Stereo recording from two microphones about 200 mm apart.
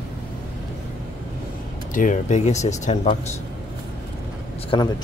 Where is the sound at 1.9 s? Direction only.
40° left (ahead or behind).